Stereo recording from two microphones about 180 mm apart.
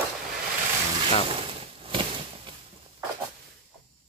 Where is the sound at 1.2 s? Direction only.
30° right (ahead or behind).